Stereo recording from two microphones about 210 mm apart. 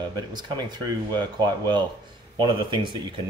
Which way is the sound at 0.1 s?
20° right (ahead or behind).